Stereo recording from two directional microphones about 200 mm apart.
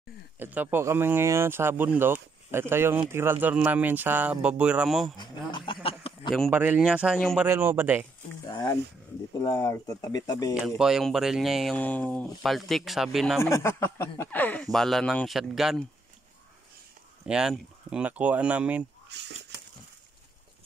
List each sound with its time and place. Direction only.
0.4 s speech: 10° right (ahead or behind)
5.1 s speech: 20° left (ahead or behind)
5.7 s a sound: 25° left (ahead or behind)
6.5 s speech: 10° right (ahead or behind)
7.4 s speech: 10° right (ahead or behind)
8.5 s speech: 20° left (ahead or behind)
10.8 s speech: centre (ahead or behind)
13.4 s speech: 15° left (ahead or behind)
17.3 s speech: 5° right (ahead or behind)
19.1 s a sound: 60° right (ahead or behind)